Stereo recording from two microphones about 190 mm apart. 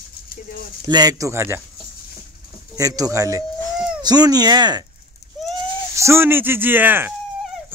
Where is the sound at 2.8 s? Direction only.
15° right (ahead or behind).